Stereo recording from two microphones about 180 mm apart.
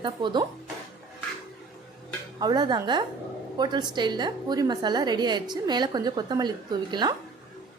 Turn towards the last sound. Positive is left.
turn(degrees=-25)  # may be behind; listen again after turning